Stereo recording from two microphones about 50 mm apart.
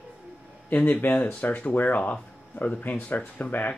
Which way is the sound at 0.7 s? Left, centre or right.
Left.